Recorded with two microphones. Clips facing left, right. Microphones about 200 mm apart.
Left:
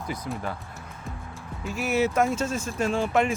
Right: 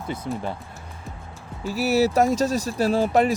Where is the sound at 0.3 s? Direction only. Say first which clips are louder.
Right 6 dB; 30° right (ahead or behind).